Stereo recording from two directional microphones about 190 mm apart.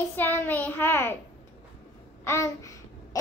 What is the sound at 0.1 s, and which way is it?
Child singing, 10° left (ahead or behind).